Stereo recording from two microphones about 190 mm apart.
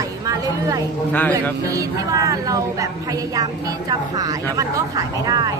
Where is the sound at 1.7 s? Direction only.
15° right (ahead or behind).